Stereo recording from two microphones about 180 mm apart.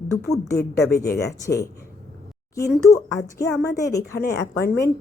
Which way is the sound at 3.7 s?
20° left (ahead or behind).